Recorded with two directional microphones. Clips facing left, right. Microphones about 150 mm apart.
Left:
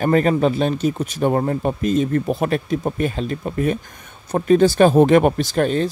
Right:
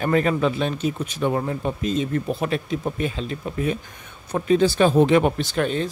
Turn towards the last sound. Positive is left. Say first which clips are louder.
# left 4 dB
turn(degrees=40)  # may be behind; listen again after turning